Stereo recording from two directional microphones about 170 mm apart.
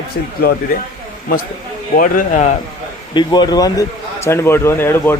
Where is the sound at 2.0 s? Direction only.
50° left (ahead or behind).